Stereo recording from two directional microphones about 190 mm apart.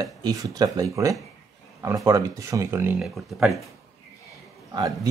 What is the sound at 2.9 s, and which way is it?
Speech, centre (ahead or behind).